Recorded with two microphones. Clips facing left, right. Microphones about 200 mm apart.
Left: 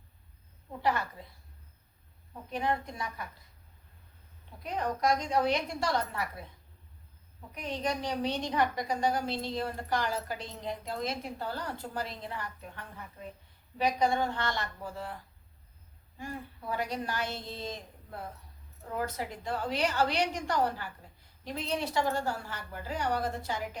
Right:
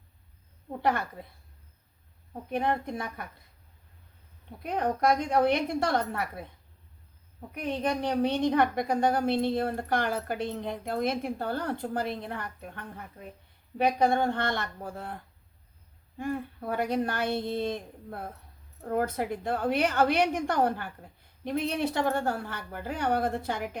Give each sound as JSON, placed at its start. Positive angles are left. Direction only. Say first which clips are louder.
{"t": 0.8, "sound": "a woman's voice", "louder": "right 2 dB", "side_deg": -55}
{"t": 2.3, "sound": "a woman's voice", "louder": "right 3 dB", "side_deg": -55}
{"t": 4.6, "sound": "a woman's voice", "louder": "right 4 dB", "side_deg": -55}
{"t": 7.5, "sound": "a woman's voice", "louder": "right 4 dB", "side_deg": -55}